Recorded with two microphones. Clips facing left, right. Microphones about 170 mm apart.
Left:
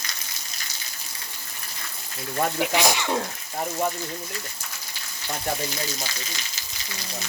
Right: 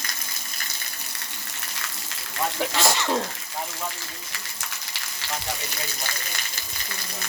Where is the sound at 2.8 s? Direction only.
15° left (ahead or behind).